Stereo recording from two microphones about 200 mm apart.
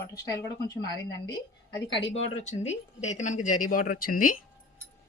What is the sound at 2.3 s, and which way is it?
Speech, 35° left (ahead or behind).